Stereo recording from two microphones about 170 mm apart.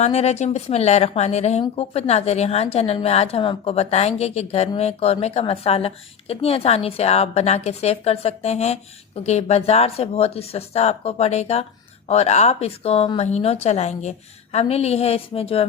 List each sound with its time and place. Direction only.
0.0 s speech: 40° left (ahead or behind)